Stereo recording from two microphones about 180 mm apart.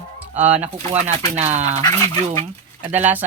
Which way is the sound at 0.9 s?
40° right (ahead or behind).